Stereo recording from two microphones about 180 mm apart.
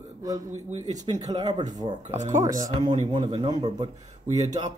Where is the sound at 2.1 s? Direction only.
40° right (ahead or behind).